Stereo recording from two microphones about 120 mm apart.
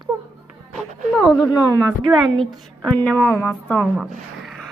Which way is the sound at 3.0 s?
20° left (ahead or behind).